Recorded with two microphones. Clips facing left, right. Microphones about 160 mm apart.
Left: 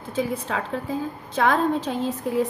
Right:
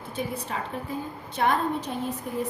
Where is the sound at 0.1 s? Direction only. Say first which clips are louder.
Left 6 dB; 90° left.